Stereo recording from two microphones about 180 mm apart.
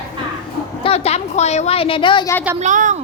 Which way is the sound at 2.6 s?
45° right (ahead or behind).